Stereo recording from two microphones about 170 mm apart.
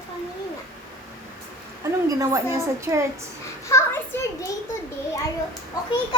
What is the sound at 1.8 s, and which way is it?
A woman's voice, 20° right (ahead or behind).